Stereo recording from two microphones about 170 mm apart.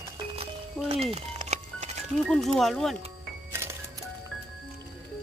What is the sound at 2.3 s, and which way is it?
Speech, centre (ahead or behind).